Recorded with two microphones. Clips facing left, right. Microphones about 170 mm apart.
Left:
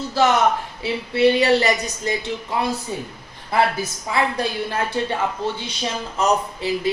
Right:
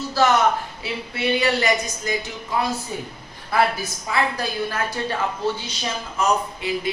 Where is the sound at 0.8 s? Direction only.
30° left (ahead or behind).